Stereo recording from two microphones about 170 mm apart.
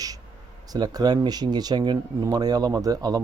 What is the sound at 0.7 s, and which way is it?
Speech, 25° right (ahead or behind).